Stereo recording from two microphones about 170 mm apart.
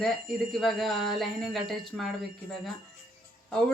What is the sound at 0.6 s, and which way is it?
Speech, centre (ahead or behind).